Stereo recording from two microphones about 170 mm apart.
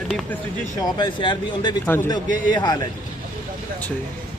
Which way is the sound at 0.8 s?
25° left (ahead or behind).